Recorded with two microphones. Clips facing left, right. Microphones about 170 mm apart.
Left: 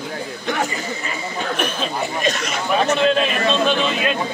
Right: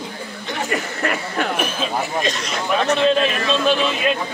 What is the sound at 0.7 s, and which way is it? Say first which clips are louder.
Speech: right 5 dB; 70° right (ahead or behind).